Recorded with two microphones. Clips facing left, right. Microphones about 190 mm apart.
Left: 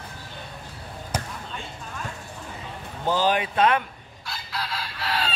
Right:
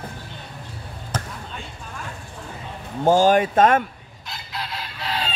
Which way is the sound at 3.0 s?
45° right (ahead or behind).